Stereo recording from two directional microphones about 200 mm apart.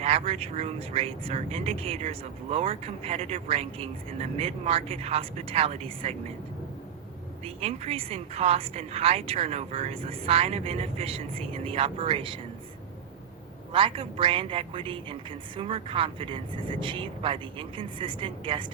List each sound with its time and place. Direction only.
0.0 s speech: 30° right (ahead or behind)
7.4 s a woman's voice: 30° right (ahead or behind)
13.7 s a woman's voice: 25° right (ahead or behind)